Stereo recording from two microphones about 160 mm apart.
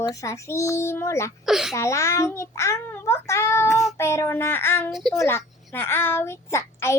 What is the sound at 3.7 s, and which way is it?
Child singing, centre (ahead or behind).